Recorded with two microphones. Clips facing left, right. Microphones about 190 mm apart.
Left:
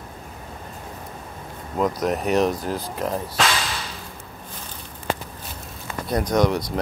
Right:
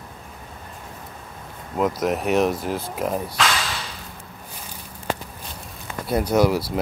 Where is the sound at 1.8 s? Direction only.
5° right (ahead or behind).